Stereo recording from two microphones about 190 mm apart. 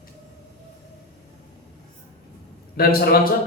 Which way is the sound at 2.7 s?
55° left (ahead or behind).